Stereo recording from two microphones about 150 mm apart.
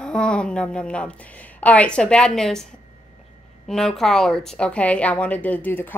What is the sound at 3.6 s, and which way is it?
A woman's voice, 5° left (ahead or behind).